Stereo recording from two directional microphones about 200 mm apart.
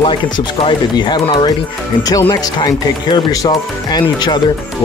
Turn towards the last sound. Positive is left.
turn(degrees=20)  # may be behind; listen again after turning